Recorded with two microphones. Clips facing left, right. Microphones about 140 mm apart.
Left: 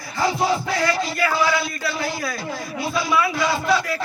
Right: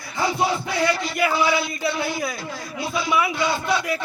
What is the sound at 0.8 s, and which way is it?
Speech, 20° right (ahead or behind).